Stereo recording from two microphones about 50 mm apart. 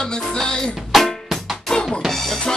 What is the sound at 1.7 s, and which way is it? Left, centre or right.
Music, centre.